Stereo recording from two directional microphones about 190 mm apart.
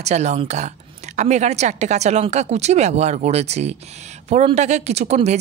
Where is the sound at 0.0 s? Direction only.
35° right (ahead or behind).